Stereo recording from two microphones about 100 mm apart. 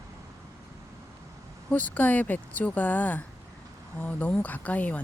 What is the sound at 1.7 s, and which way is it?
Speech, 15° left (ahead or behind).